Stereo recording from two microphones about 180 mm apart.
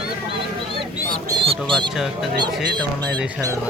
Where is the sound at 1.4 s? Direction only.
30° right (ahead or behind).